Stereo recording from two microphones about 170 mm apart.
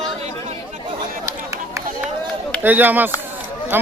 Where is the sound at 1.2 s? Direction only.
20° right (ahead or behind).